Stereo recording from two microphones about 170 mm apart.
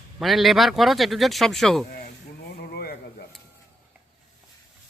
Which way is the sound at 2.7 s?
65° left (ahead or behind).